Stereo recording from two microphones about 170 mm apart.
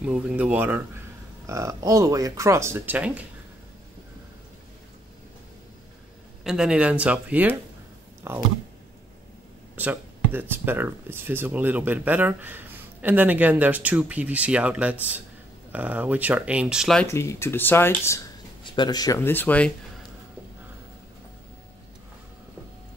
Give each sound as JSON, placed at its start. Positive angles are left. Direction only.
{"t": 0.0, "sound": "speech", "side_deg": -5}
{"t": 6.4, "sound": "speech", "side_deg": -5}
{"t": 9.8, "sound": "speech", "side_deg": -10}
{"t": 17.1, "sound": "speech", "side_deg": 15}
{"t": 18.6, "sound": "speech", "side_deg": 25}